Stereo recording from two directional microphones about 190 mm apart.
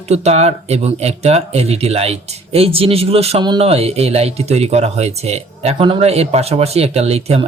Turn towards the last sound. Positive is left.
turn(degrees=-35)  # may be behind; listen again after turning